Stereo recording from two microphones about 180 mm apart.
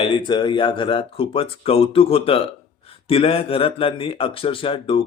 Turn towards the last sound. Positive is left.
turn(degrees=30)  # may be behind; listen again after turning